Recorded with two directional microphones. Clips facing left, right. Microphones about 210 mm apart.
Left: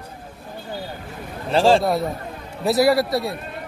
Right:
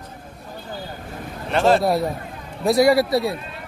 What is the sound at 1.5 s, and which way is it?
Speech, 30° left (ahead or behind).